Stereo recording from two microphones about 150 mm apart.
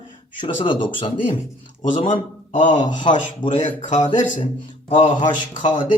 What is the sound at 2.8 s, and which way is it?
Speech, 30° left (ahead or behind).